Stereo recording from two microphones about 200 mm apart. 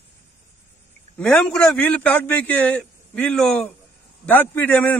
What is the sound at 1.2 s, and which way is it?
A man's voice, 5° left (ahead or behind).